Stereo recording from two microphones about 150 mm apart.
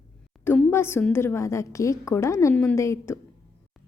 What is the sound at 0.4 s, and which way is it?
A woman's voice, 15° left (ahead or behind).